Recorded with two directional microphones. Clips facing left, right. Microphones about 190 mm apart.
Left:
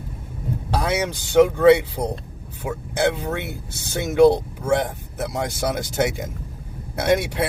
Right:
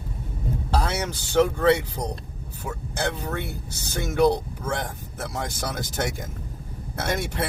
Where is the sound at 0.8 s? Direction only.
15° left (ahead or behind).